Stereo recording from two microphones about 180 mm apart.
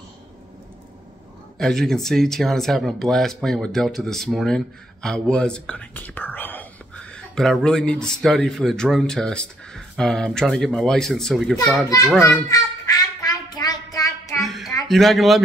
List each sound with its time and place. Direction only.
1.6 s speech: 5° left (ahead or behind)
12.3 s child singing: 20° left (ahead or behind)
14.4 s a sound: centre (ahead or behind)
14.9 s speech: centre (ahead or behind)